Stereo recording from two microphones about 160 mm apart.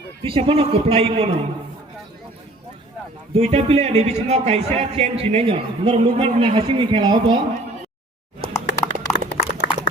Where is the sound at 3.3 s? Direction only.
40° right (ahead or behind).